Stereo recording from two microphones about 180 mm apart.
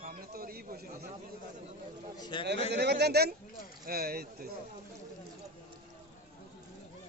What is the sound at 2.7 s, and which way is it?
Speech, 65° right (ahead or behind).